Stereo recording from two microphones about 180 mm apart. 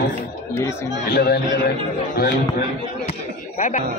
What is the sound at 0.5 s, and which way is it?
Speech, 15° left (ahead or behind).